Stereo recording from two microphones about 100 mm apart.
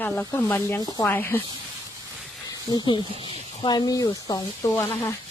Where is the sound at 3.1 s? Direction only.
60° right (ahead or behind).